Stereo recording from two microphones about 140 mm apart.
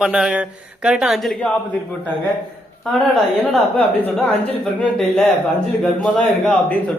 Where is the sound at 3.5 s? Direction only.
10° left (ahead or behind).